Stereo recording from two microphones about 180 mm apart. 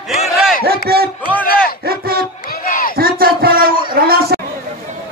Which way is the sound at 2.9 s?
55° right (ahead or behind).